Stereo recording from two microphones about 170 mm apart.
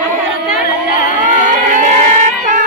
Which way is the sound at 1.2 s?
50° right (ahead or behind).